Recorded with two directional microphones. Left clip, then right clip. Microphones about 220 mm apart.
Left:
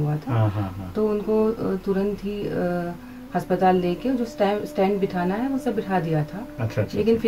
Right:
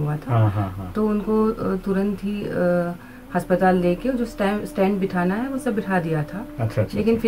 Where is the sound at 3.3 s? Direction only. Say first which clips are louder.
Right 1 dB; 25° right (ahead or behind).